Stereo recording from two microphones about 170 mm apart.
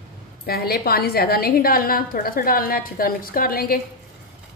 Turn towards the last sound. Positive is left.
turn(degrees=60)  # may be behind; listen again after turning